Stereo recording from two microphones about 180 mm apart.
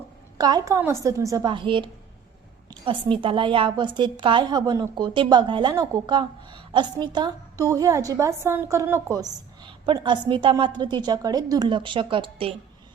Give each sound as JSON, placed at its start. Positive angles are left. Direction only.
{"t": 0.3, "sound": "a woman's voice", "side_deg": -20}
{"t": 9.6, "sound": "a woman's voice", "side_deg": -30}